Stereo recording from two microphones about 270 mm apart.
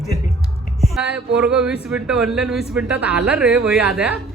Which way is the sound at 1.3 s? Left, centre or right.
Centre.